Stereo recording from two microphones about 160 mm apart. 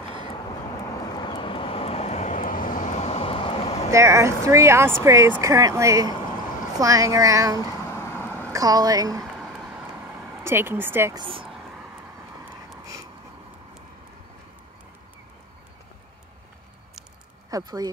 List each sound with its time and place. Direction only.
1.1 s vehicle: 30° left (ahead or behind)
3.9 s speech: 20° right (ahead or behind)
9.2 s a sound: centre (ahead or behind)
10.4 s speech: 15° right (ahead or behind)
11.1 s speech: 35° right (ahead or behind)
17.5 s speech: 20° right (ahead or behind)